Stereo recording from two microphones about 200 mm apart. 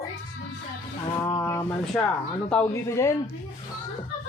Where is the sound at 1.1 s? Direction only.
20° left (ahead or behind).